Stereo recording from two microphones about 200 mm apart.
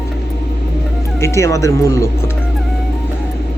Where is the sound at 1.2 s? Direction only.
15° left (ahead or behind).